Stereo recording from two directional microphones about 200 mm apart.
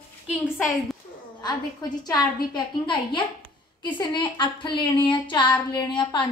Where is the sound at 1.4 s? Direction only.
20° left (ahead or behind).